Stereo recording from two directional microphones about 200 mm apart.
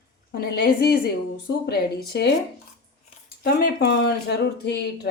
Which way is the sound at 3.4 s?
50° left (ahead or behind).